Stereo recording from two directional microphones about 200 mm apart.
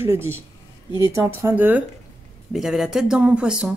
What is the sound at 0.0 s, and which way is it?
Speech, 10° right (ahead or behind).